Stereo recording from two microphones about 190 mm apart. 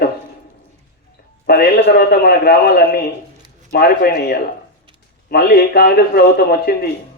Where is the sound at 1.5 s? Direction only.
55° left (ahead or behind).